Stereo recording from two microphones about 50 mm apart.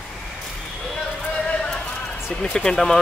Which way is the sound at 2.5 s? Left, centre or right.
Centre.